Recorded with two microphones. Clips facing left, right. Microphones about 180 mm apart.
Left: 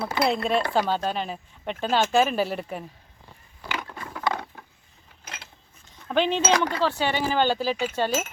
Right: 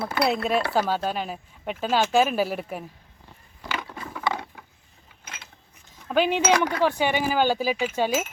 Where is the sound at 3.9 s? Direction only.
5° right (ahead or behind).